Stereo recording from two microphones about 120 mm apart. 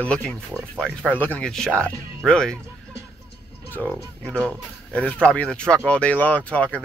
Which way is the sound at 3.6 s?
15° left (ahead or behind).